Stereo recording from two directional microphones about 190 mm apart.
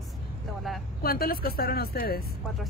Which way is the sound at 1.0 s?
50° left (ahead or behind).